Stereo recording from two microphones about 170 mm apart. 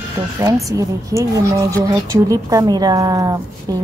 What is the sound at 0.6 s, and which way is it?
A woman's voice, 20° right (ahead or behind).